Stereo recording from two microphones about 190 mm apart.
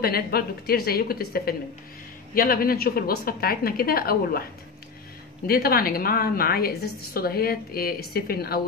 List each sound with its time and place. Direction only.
0.0 s a woman's voice: 55° left (ahead or behind)
5.5 s a woman's voice: 50° left (ahead or behind)